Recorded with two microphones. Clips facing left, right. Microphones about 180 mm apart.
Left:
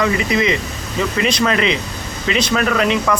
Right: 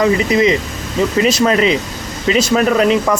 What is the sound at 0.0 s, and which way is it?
A man's voice, 35° right (ahead or behind).